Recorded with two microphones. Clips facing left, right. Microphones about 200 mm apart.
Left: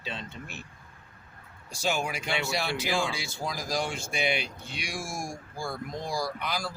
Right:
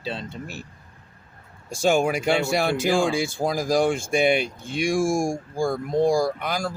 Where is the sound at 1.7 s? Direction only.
45° right (ahead or behind).